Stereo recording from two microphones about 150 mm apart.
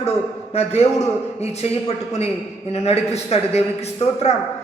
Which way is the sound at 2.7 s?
45° left (ahead or behind).